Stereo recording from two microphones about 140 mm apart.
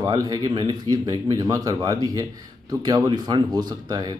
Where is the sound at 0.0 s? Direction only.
25° right (ahead or behind).